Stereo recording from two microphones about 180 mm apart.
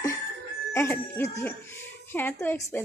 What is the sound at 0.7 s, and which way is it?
Speech, 15° left (ahead or behind).